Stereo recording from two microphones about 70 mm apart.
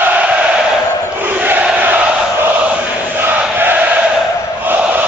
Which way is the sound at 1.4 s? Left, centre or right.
Right.